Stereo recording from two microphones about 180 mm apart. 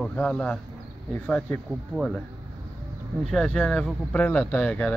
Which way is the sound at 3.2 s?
5° left (ahead or behind).